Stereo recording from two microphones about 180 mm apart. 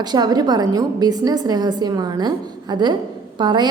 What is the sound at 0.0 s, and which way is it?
A woman's voice, 25° right (ahead or behind).